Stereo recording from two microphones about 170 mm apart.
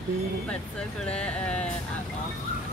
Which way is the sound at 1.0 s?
5° left (ahead or behind).